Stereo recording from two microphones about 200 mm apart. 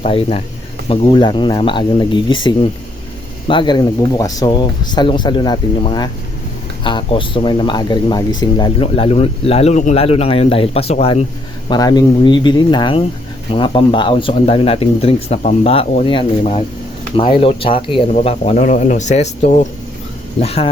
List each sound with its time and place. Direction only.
0.0 s speech: 30° left (ahead or behind)
11.7 s speech: 20° left (ahead or behind)